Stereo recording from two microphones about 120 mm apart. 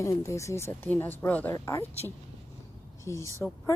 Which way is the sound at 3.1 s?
25° left (ahead or behind).